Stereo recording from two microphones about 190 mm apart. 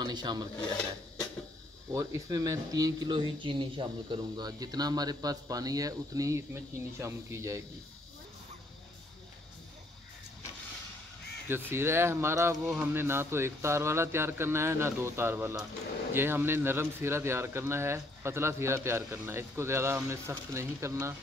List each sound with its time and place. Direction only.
0.0 s speech: 20° right (ahead or behind)
1.9 s speech: 20° right (ahead or behind)
11.4 s speech: 10° right (ahead or behind)
12.5 s speech: centre (ahead or behind)
12.9 s speech: 10° right (ahead or behind)